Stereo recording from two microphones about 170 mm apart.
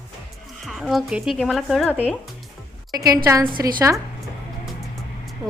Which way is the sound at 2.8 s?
20° right (ahead or behind).